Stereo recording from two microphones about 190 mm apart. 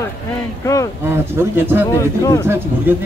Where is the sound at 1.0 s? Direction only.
10° right (ahead or behind).